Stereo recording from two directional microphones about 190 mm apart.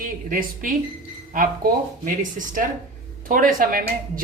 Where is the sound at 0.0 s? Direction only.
45° right (ahead or behind).